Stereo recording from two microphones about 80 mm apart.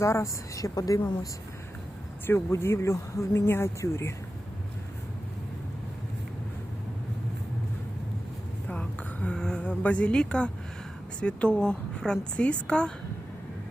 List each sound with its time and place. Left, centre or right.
0.0 s a woman's voice: left
2.2 s speech: left
8.6 s a sound: centre
11.2 s a woman's voice: centre